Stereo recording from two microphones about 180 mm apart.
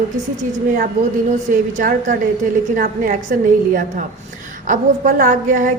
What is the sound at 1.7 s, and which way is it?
A woman's voice, 45° right (ahead or behind).